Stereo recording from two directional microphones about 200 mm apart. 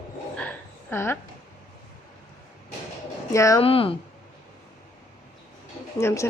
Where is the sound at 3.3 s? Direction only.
15° left (ahead or behind).